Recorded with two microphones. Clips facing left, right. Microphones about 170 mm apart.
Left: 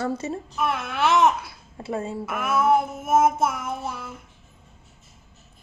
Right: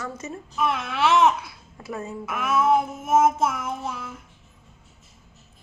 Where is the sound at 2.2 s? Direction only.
5° left (ahead or behind).